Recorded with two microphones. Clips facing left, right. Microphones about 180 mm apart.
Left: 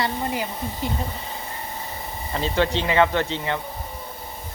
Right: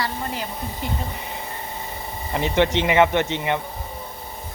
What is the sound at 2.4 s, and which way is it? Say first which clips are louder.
Speech: right 3 dB; 20° right (ahead or behind).